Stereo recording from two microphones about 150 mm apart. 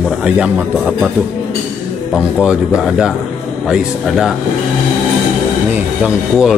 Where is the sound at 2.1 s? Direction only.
5° right (ahead or behind).